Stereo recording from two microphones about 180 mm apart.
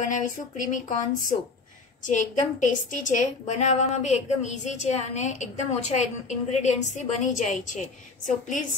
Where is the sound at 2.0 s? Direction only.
45° left (ahead or behind).